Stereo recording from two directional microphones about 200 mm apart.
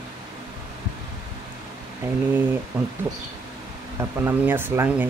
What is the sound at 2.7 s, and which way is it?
Speech, 5° right (ahead or behind).